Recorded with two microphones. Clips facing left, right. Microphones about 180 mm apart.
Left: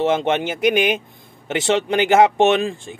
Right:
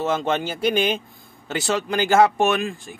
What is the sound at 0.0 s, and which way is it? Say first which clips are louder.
Speech: left 4 dB; 25° left (ahead or behind).